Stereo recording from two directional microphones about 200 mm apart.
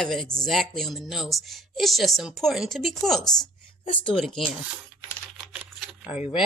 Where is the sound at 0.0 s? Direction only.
Centre (ahead or behind).